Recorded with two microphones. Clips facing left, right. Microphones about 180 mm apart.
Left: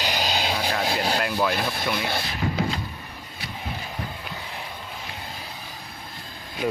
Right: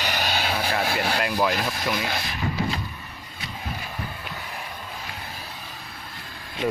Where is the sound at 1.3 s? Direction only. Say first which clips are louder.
Right 1 dB; 10° right (ahead or behind).